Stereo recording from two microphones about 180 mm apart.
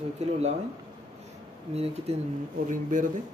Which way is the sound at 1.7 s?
35° right (ahead or behind).